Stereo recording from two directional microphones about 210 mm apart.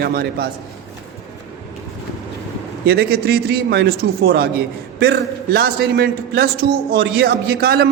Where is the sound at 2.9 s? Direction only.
50° right (ahead or behind).